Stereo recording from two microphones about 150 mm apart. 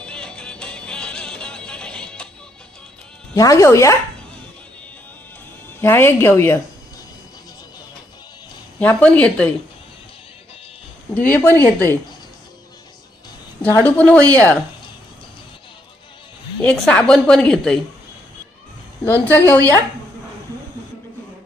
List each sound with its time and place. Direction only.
0.0 s music: 5° left (ahead or behind)
3.3 s speech: 20° left (ahead or behind)
5.8 s speech: 15° left (ahead or behind)
8.8 s speech: 10° left (ahead or behind)
11.1 s speech: 10° left (ahead or behind)
13.6 s speech: 15° left (ahead or behind)
16.6 s a woman's voice: 5° left (ahead or behind)
19.2 s speech: 10° left (ahead or behind)